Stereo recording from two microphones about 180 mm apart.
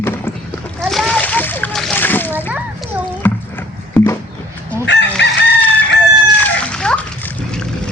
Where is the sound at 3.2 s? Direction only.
10° left (ahead or behind).